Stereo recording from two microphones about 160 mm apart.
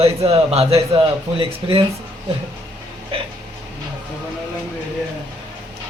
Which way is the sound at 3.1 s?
35° right (ahead or behind).